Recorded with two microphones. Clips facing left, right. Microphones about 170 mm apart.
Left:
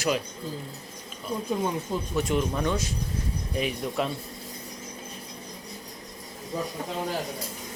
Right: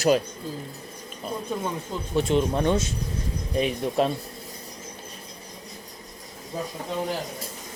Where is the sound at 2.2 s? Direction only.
30° right (ahead or behind).